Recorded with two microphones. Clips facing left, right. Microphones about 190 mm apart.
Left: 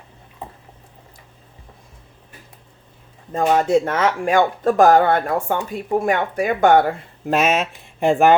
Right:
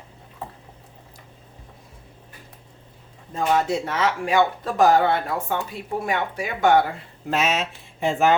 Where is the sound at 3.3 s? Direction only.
50° left (ahead or behind).